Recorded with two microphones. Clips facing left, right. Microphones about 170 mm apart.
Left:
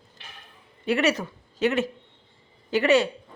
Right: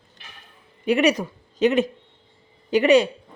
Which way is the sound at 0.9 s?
15° right (ahead or behind).